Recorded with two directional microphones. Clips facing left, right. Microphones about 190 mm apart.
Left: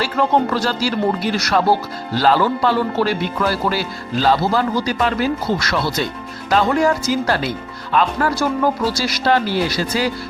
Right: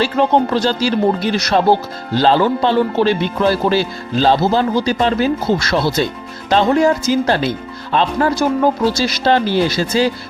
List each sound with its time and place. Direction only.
0.0 s speech: 20° right (ahead or behind)